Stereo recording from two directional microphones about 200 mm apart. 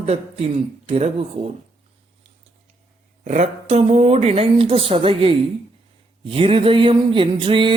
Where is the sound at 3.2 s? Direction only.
35° right (ahead or behind).